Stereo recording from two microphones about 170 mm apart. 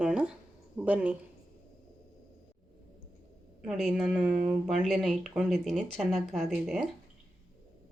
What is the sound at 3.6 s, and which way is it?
Speech, centre (ahead or behind).